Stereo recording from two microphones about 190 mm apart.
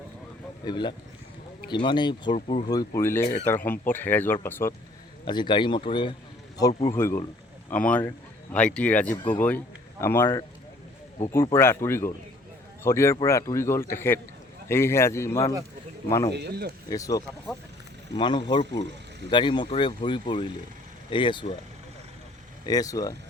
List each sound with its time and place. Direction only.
0.6 s speech: 25° left (ahead or behind)
2.3 s speech: 35° left (ahead or behind)
2.6 s speech: 15° left (ahead or behind)
5.2 s speech: 25° left (ahead or behind)
6.9 s speech: 10° left (ahead or behind)
9.1 s speech: 25° left (ahead or behind)
10.0 s speech: 10° left (ahead or behind)
11.5 s speech: 10° left (ahead or behind)
16.3 s speech: 60° right (ahead or behind)
16.9 s speech: 20° left (ahead or behind)
22.6 s speech: 20° left (ahead or behind)